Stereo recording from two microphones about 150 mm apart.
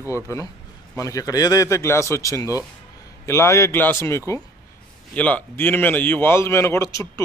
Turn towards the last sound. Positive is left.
turn(degrees=20)  # may be behind; listen again after turning